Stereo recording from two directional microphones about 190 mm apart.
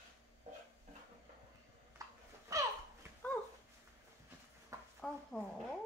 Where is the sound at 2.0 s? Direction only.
15° right (ahead or behind).